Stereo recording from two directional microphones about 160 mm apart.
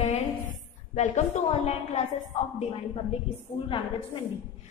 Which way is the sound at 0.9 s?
45° left (ahead or behind).